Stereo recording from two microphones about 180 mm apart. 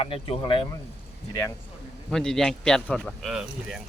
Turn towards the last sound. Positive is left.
turn(degrees=0)  # may be behind; listen again after turning